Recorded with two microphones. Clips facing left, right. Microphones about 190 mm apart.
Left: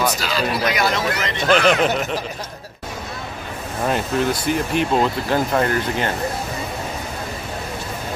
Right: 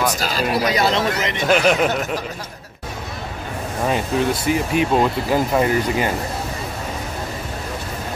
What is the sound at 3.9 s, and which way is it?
Speech, centre (ahead or behind).